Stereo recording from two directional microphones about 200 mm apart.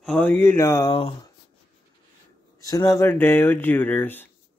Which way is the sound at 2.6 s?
15° left (ahead or behind).